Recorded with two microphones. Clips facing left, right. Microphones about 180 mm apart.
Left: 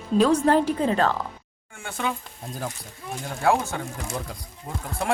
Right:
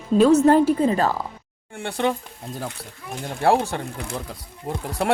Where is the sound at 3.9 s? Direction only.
60° right (ahead or behind).